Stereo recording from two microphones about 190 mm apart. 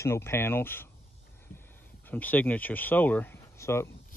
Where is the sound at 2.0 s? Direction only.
10° left (ahead or behind).